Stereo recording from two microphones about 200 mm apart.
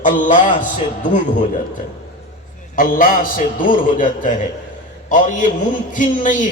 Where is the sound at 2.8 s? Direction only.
45° left (ahead or behind).